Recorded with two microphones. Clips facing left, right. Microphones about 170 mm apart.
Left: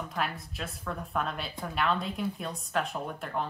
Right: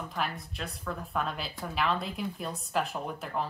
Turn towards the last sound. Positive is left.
turn(degrees=0)  # may be behind; listen again after turning